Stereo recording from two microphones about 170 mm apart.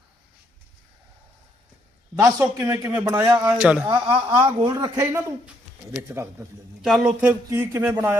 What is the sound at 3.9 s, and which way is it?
A man's voice, 30° right (ahead or behind).